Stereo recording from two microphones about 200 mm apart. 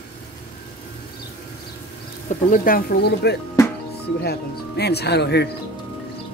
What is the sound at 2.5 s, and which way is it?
Speech, 45° left (ahead or behind).